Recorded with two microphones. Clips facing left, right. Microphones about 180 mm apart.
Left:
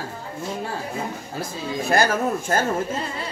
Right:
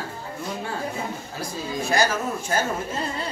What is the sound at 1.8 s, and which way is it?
Speech, 55° left (ahead or behind).